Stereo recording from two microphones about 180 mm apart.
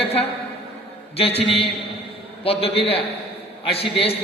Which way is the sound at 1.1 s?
35° left (ahead or behind).